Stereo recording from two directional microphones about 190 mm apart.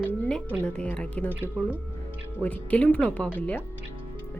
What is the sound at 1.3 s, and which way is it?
Speech, 10° right (ahead or behind).